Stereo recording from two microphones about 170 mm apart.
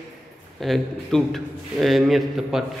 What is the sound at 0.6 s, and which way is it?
Speech, centre (ahead or behind).